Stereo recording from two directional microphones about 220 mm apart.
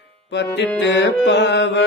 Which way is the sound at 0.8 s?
50° left (ahead or behind).